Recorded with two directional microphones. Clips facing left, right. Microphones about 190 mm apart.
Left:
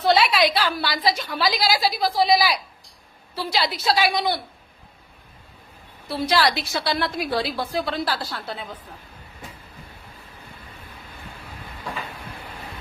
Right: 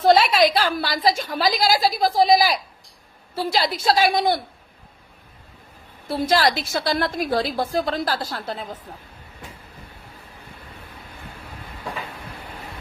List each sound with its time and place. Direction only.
0.0 s a woman's voice: 45° right (ahead or behind)
6.1 s a woman's voice: 50° right (ahead or behind)